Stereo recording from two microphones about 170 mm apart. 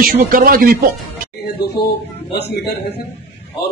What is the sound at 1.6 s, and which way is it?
A man's voice, 70° left (ahead or behind).